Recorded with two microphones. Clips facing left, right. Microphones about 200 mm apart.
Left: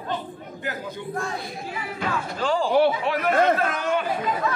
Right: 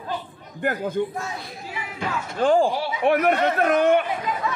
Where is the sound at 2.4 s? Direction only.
55° right (ahead or behind).